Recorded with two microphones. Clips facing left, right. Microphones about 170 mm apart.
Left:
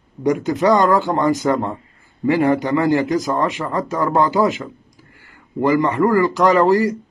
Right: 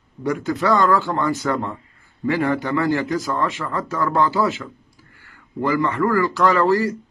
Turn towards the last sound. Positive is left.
turn(degrees=15)  # may be behind; listen again after turning